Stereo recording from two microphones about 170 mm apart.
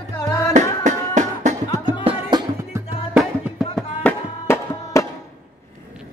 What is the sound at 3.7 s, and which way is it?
Music, 10° left (ahead or behind).